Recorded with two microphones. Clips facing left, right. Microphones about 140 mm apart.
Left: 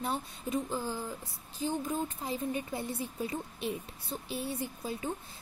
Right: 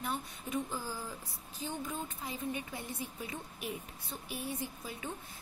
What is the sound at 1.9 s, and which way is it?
A woman's voice, 35° left (ahead or behind).